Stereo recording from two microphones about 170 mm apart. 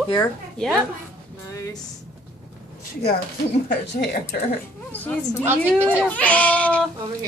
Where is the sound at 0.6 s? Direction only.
5° left (ahead or behind).